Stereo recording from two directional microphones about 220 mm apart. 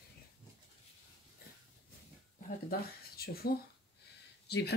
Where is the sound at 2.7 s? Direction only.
45° left (ahead or behind).